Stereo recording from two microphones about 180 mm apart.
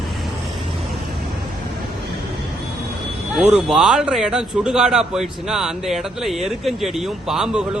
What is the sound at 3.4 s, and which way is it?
A man's voice, 5° right (ahead or behind).